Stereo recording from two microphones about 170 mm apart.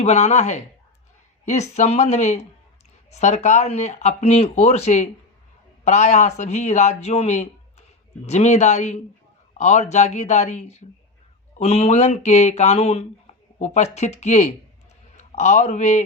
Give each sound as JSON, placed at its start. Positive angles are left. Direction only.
{"t": 0.0, "sound": "speech", "side_deg": 40}
{"t": 1.7, "sound": "a man's voice", "side_deg": 40}